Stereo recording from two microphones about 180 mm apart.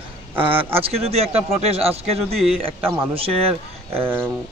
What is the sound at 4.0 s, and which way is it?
Speech, 10° right (ahead or behind).